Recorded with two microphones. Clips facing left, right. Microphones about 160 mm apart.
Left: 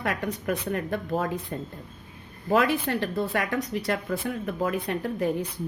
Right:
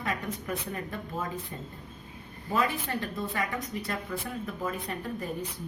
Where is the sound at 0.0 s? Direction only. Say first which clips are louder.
Left 5 dB; 75° left (ahead or behind).